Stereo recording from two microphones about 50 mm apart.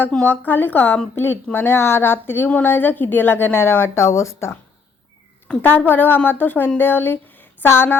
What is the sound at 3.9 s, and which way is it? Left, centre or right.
Speech, left.